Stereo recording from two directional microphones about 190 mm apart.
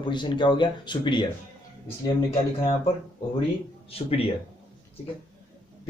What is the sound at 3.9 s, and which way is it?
Speech, 30° left (ahead or behind).